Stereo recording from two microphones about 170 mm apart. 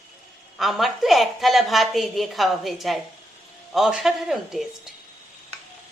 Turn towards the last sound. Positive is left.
turn(degrees=0)  # may be behind; listen again after turning